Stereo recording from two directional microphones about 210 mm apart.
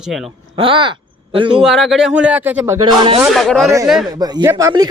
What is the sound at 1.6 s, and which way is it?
Speech, centre (ahead or behind).